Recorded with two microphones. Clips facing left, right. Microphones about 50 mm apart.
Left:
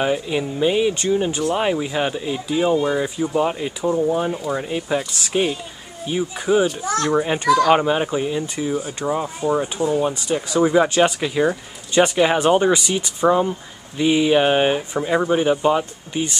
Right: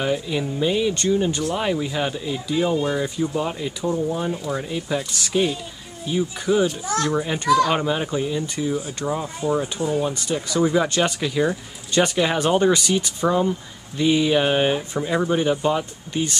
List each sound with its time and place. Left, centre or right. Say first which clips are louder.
0.0 s a child's voice: left 2 dB; centre